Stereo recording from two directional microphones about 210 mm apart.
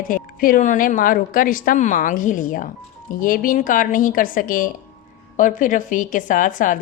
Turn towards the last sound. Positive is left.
turn(degrees=40)  # may be behind; listen again after turning